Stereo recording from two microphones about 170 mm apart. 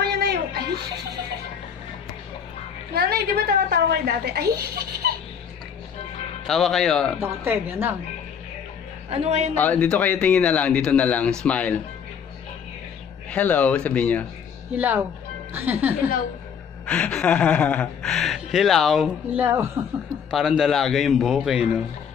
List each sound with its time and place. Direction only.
0.0 s music: 70° right (ahead or behind)
2.9 s a woman's voice: 65° right (ahead or behind)
6.4 s speech: centre (ahead or behind)
7.2 s a woman's voice: 10° right (ahead or behind)
9.1 s a man's voice: 40° right (ahead or behind)
9.6 s speech: 10° left (ahead or behind)
13.3 s speech: 10° left (ahead or behind)
15.5 s a woman's voice: 10° right (ahead or behind)
16.8 s speech: 5° left (ahead or behind)
19.4 s a woman's voice: 15° right (ahead or behind)
20.2 s speech: centre (ahead or behind)